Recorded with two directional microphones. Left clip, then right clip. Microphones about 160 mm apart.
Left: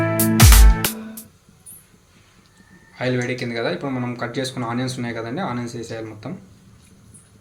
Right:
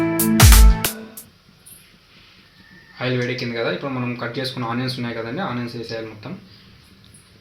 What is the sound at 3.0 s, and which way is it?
Speech, 10° left (ahead or behind).